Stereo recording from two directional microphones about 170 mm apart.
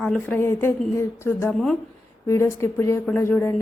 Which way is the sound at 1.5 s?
5° left (ahead or behind).